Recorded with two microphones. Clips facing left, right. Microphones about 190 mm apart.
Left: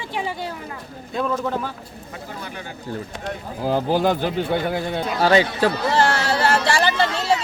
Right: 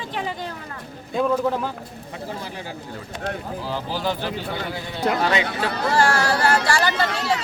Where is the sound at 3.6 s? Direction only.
50° left (ahead or behind).